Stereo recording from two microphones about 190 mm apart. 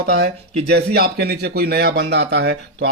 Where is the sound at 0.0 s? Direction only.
65° right (ahead or behind).